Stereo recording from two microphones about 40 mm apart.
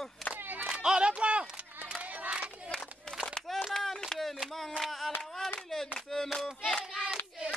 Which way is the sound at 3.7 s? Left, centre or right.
Centre.